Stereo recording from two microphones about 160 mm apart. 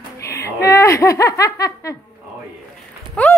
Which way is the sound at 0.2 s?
20° left (ahead or behind).